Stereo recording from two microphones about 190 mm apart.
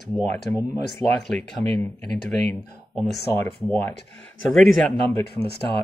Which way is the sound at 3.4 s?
10° left (ahead or behind).